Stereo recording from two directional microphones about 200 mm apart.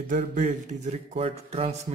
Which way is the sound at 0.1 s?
40° right (ahead or behind).